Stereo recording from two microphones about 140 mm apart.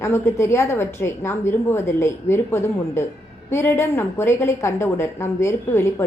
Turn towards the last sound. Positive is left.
turn(degrees=20)  # may be behind; listen again after turning